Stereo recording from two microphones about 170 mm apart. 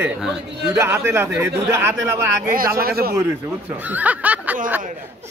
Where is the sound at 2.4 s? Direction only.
60° right (ahead or behind).